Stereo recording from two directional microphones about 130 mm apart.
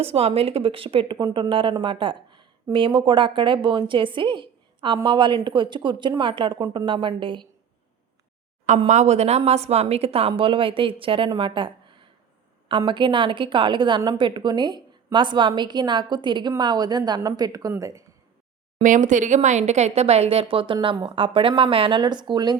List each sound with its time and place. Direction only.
0.0 s speech: 50° right (ahead or behind)
8.9 s a woman's voice: 60° right (ahead or behind); by 18.0 s 25° right (ahead or behind)
18.8 s speech: 80° right; by 22.5 s 35° right (ahead or behind)